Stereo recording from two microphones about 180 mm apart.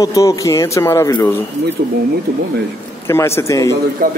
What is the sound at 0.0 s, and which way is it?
Speech, 20° left (ahead or behind).